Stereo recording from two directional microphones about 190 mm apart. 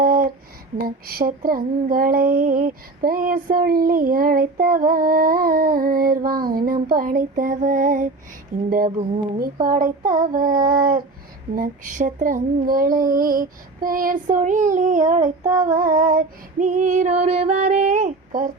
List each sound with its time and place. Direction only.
0.0 s a sound: 50° right (ahead or behind)
0.9 s child singing: 50° right (ahead or behind)
15.6 s female singing: 45° right (ahead or behind)